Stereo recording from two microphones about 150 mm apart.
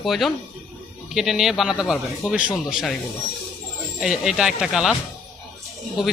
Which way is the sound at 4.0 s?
5° right (ahead or behind).